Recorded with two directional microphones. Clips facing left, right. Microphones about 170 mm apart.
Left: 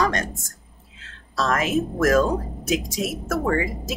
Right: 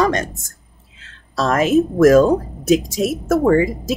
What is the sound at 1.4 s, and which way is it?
Speech, 30° right (ahead or behind).